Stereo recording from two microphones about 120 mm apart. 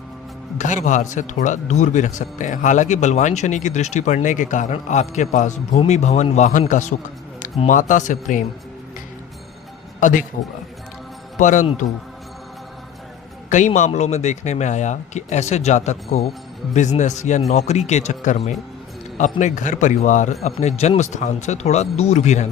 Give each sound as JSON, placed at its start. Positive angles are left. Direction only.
{"t": 0.6, "sound": "speech", "side_deg": 90}
{"t": 10.0, "sound": "speech", "side_deg": 90}
{"t": 11.3, "sound": "speech", "side_deg": 90}
{"t": 13.5, "sound": "speech", "side_deg": 90}
{"t": 17.5, "sound": "speech", "side_deg": 65}
{"t": 19.1, "sound": "speech", "side_deg": 85}
{"t": 20.4, "sound": "speech", "side_deg": 65}